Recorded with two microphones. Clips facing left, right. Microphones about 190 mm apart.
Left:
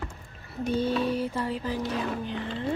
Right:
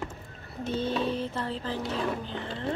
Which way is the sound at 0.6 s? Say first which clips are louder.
Left 3 dB; 10° left (ahead or behind).